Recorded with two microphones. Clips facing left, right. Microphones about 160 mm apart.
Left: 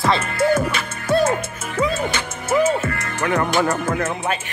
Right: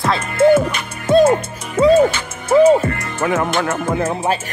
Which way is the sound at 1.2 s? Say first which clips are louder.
Right 6 dB; 35° right (ahead or behind).